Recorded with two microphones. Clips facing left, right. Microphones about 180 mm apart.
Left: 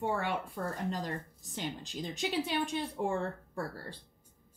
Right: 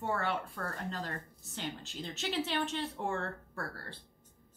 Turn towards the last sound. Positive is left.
turn(degrees=15)  # may be behind; listen again after turning